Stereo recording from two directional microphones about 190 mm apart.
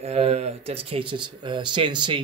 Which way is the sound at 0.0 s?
35° right (ahead or behind).